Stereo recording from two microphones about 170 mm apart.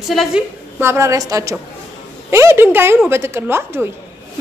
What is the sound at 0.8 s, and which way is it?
A woman's voice, 15° right (ahead or behind).